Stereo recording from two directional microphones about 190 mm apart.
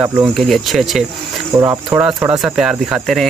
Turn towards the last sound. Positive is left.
turn(degrees=0)  # may be behind; listen again after turning